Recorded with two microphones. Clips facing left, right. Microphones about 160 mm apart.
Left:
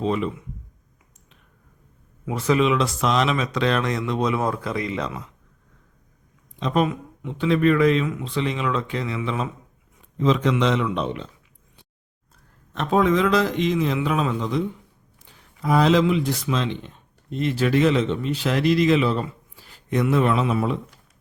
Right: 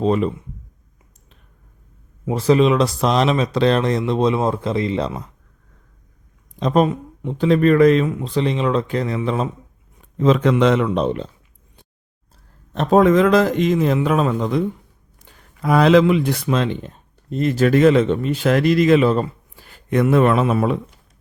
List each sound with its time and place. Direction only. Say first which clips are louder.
0.0 s speech: right 5 dB; 40° right (ahead or behind)
2.2 s speech: right 5 dB; 30° right (ahead or behind)
6.6 s speech: right 5 dB; 40° right (ahead or behind)
10.2 s a man's voice: right 5 dB; 50° right (ahead or behind)
12.7 s a man's voice: right 6 dB; 40° right (ahead or behind)
15.2 s speech: right 4 dB; 65° right (ahead or behind)